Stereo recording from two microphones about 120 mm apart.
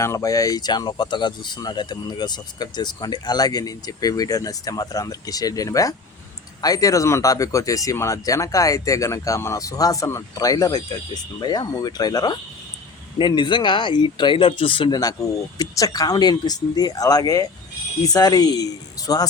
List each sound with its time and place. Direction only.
0.0 s speech: 25° left (ahead or behind)